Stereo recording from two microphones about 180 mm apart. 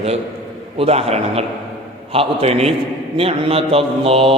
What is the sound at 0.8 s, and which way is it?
Mantra, 35° right (ahead or behind).